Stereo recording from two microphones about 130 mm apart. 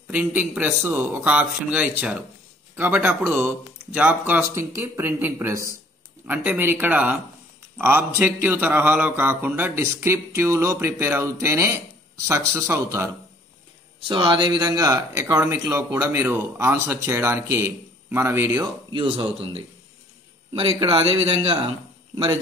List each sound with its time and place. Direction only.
0.1 s speech: 15° right (ahead or behind)
14.0 s speech: 40° right (ahead or behind); by 18.7 s 20° right (ahead or behind)
18.9 s speech: 40° right (ahead or behind)
20.9 s a man's voice: 45° right (ahead or behind)
22.1 s speech: 30° right (ahead or behind)